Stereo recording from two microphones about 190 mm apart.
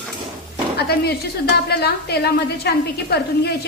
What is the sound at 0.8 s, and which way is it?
A woman's voice, 55° left (ahead or behind).